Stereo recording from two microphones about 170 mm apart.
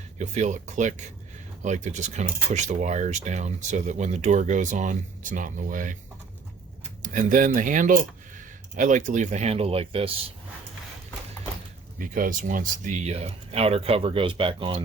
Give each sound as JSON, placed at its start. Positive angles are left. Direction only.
{"t": 0.2, "sound": "speech", "side_deg": -45}
{"t": 7.0, "sound": "speech", "side_deg": -50}
{"t": 11.9, "sound": "speech", "side_deg": -55}